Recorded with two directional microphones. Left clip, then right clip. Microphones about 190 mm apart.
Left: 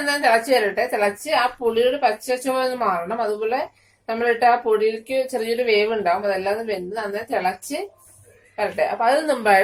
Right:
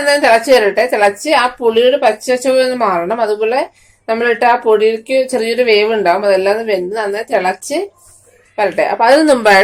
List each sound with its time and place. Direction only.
0.0 s a woman's voice: 45° right (ahead or behind)